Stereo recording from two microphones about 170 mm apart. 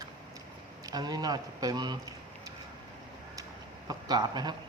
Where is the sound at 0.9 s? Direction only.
25° right (ahead or behind).